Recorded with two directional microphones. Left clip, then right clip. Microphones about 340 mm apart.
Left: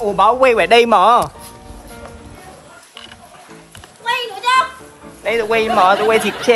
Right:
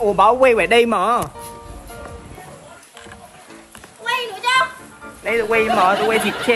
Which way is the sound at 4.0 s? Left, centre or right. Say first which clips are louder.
Left 2 dB; centre.